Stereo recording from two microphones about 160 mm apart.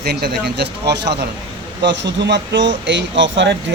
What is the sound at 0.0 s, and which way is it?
Speech, 90° right.